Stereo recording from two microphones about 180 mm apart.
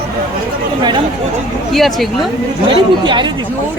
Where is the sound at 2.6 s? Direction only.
30° right (ahead or behind).